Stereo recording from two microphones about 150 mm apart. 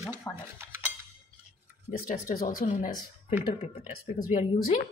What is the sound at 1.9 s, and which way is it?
Speech, 65° left (ahead or behind).